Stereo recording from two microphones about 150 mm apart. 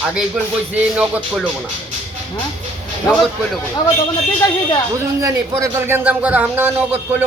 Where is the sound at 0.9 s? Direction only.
10° right (ahead or behind).